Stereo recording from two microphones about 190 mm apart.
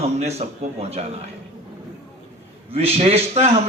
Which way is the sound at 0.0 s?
35° right (ahead or behind).